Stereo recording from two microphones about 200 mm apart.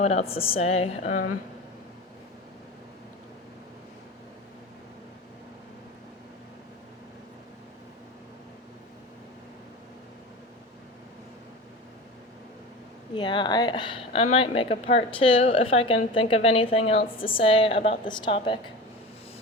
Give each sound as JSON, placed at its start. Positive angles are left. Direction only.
{"t": 0.0, "sound": "speech", "side_deg": 30}
{"t": 13.1, "sound": "speech", "side_deg": 20}